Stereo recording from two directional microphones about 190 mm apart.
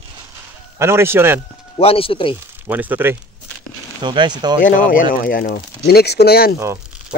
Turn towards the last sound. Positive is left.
turn(degrees=55)  # may be behind; listen again after turning